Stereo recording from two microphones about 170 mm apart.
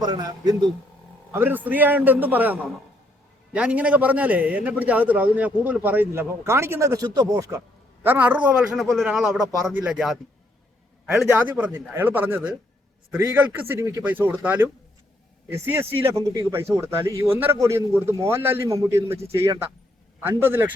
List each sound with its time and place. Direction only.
0.0 s a man's voice: 25° right (ahead or behind)
1.3 s speech: 10° right (ahead or behind)